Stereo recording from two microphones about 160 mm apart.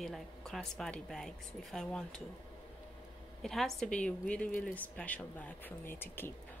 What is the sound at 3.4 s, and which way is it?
A woman's voice, centre (ahead or behind).